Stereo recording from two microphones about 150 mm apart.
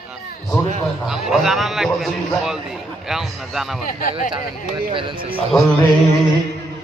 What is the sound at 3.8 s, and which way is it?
Speech, 65° left (ahead or behind).